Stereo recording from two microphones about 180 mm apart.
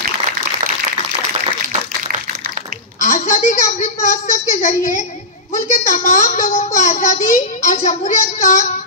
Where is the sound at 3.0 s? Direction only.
45° left (ahead or behind).